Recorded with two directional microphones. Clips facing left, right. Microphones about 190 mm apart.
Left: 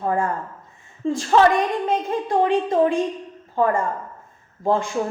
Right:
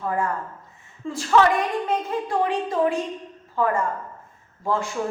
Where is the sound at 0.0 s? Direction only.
30° left (ahead or behind).